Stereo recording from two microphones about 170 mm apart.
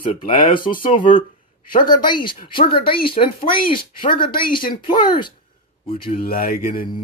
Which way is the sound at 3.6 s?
60° left (ahead or behind).